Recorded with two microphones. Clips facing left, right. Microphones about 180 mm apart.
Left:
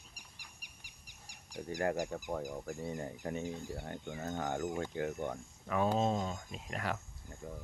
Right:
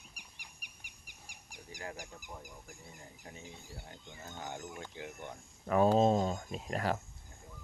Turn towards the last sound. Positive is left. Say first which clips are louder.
# left 10 dB
turn(degrees=60)  # may be behind; listen again after turning